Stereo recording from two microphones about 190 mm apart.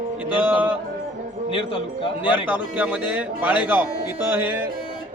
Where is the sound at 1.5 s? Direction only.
30° left (ahead or behind).